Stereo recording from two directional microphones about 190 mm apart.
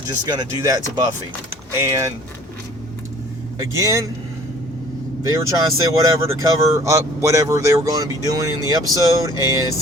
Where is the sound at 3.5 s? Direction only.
15° right (ahead or behind).